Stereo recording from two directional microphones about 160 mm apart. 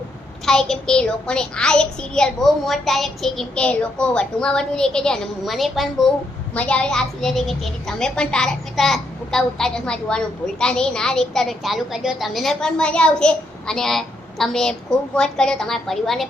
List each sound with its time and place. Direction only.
0.4 s a woman's voice: 5° left (ahead or behind)